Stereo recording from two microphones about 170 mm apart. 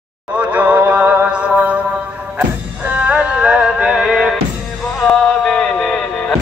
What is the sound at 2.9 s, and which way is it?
Music, 10° right (ahead or behind).